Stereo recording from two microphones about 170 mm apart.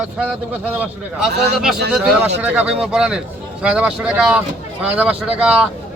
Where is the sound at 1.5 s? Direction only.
Centre (ahead or behind).